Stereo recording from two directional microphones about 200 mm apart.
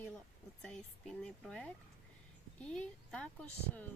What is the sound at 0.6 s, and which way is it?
Speech, 5° left (ahead or behind).